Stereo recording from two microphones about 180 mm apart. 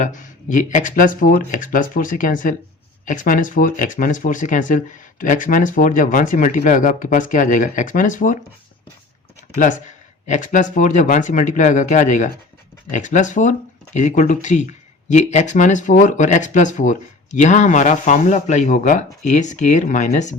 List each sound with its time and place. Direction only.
0.0 s speech: 45° left (ahead or behind)
10.2 s speech: 45° left (ahead or behind)